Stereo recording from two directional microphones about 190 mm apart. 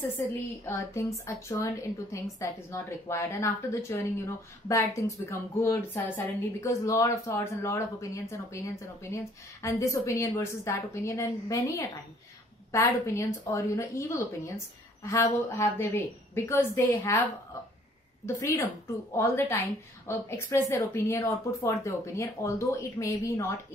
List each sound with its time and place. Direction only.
0.7 s a woman's voice: 15° left (ahead or behind)
12.7 s a woman's voice: 15° left (ahead or behind)
18.2 s a woman's voice: 15° left (ahead or behind)